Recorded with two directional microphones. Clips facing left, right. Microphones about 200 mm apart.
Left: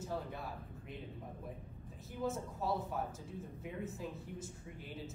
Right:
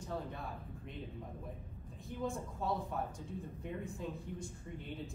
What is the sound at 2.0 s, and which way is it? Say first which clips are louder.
Speech: left 1 dB; 5° left (ahead or behind).